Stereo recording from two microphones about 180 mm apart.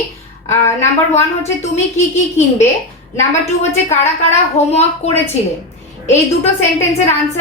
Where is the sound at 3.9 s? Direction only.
40° left (ahead or behind).